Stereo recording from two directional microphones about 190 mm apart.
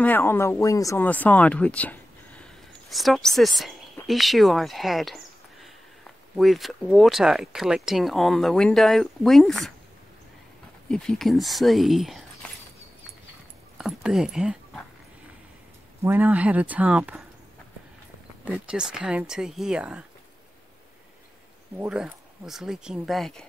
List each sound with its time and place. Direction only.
0.0 s speech: 10° left (ahead or behind)
10.9 s speech: centre (ahead or behind)
13.7 s speech: centre (ahead or behind)
16.0 s speech: 10° right (ahead or behind)
18.4 s speech: 5° right (ahead or behind)
21.7 s speech: 5° right (ahead or behind)